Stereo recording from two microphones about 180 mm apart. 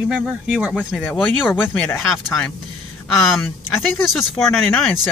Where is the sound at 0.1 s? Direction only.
5° right (ahead or behind).